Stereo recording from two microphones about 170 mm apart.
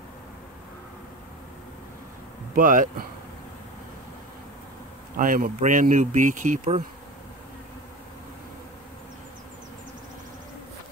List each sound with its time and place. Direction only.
2.5 s speech: 50° right (ahead or behind)
5.1 s speech: 55° right (ahead or behind)